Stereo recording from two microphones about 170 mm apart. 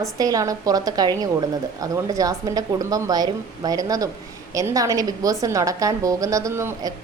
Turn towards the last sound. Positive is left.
turn(degrees=-15)  # may be behind; listen again after turning